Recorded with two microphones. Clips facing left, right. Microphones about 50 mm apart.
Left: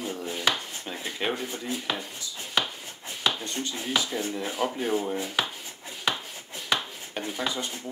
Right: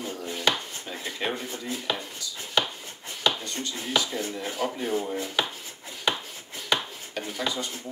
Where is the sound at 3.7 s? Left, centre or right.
Centre.